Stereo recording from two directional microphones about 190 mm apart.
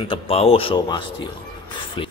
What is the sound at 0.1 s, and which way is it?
Speech, 30° left (ahead or behind).